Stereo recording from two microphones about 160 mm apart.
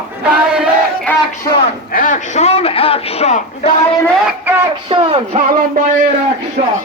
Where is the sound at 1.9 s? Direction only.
55° left (ahead or behind).